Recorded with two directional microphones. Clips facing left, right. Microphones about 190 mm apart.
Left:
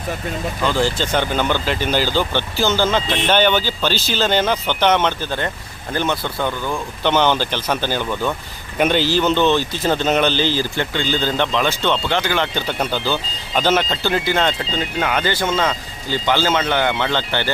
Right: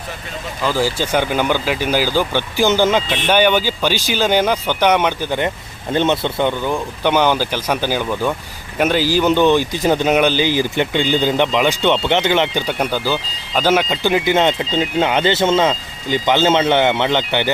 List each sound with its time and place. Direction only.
0.6 s speech: 5° right (ahead or behind)